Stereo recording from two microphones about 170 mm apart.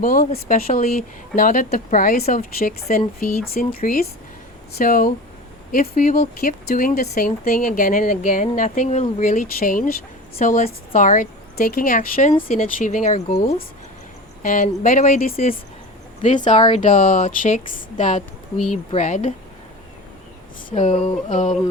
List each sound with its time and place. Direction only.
0.0 s speech: 50° left (ahead or behind)
14.4 s speech: 50° left (ahead or behind)
16.6 s speech: 30° left (ahead or behind)
16.8 s speech: 50° left (ahead or behind)
20.7 s a sound: 35° left (ahead or behind)
21.2 s speech: 45° left (ahead or behind)